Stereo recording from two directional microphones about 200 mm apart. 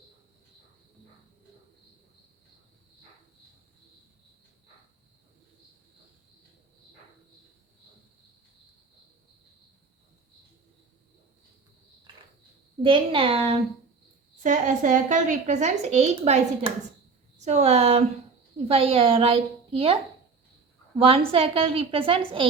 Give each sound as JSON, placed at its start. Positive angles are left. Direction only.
{"t": 12.8, "sound": "a woman's voice", "side_deg": -25}
{"t": 14.4, "sound": "a woman's voice", "side_deg": -40}
{"t": 21.0, "sound": "a woman's voice", "side_deg": -30}